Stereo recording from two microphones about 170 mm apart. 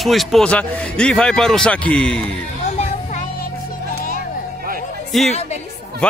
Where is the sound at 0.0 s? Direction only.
Centre (ahead or behind).